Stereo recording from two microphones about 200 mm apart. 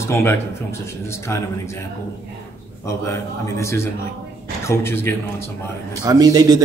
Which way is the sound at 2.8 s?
15° left (ahead or behind).